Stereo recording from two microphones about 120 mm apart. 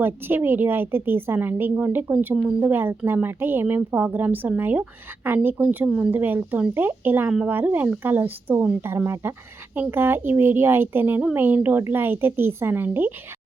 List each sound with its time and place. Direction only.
0.0 s a woman's voice: 15° right (ahead or behind)